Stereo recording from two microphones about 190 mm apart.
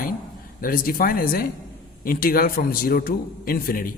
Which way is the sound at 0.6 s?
45° left (ahead or behind).